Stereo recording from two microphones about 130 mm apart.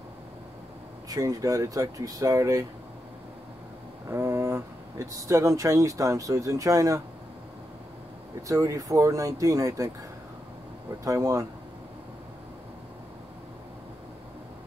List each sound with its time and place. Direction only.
1.0 s speech: 25° right (ahead or behind)
4.1 s speech: 20° right (ahead or behind)
8.5 s speech: 25° right (ahead or behind)
11.1 s speech: 25° right (ahead or behind)